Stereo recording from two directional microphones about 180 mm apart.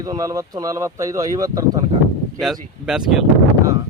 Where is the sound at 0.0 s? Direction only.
20° right (ahead or behind).